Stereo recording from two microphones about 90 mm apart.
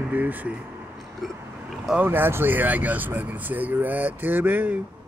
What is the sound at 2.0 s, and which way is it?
Speech, 25° right (ahead or behind).